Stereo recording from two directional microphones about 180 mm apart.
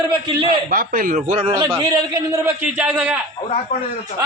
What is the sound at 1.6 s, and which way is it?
A man's voice, 20° right (ahead or behind).